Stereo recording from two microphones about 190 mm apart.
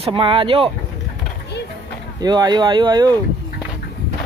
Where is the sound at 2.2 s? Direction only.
20° right (ahead or behind).